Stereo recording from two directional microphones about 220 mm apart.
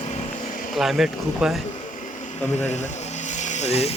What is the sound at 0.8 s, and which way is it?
Speech, centre (ahead or behind).